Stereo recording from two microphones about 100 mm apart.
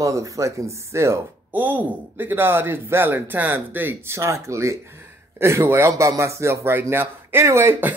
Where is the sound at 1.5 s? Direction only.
20° right (ahead or behind).